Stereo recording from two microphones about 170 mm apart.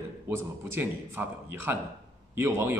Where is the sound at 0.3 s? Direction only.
15° right (ahead or behind).